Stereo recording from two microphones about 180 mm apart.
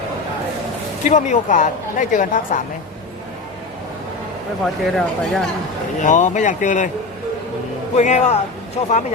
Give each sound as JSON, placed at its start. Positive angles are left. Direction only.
{"t": 1.0, "sound": "speech", "side_deg": 45}
{"t": 4.6, "sound": "speech", "side_deg": 0}
{"t": 6.0, "sound": "speech", "side_deg": 40}
{"t": 7.9, "sound": "speech", "side_deg": 40}